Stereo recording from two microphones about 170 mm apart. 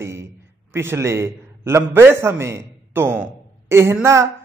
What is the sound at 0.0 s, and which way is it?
A man's voice, 15° right (ahead or behind).